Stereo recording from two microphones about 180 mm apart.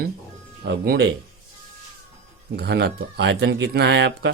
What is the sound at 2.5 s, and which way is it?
Speech, 65° right (ahead or behind).